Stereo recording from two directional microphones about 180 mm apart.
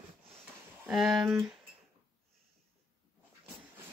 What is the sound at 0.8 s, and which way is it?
Speech, centre (ahead or behind).